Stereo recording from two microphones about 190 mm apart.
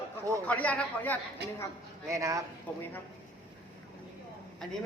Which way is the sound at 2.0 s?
15° right (ahead or behind).